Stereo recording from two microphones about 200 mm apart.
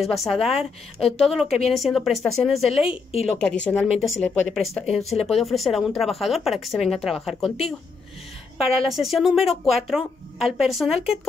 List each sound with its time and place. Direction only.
0.0 s speech: centre (ahead or behind)
2.9 s a woman's voice: 30° left (ahead or behind)
3.3 s speech: 5° left (ahead or behind)
8.8 s speech: centre (ahead or behind)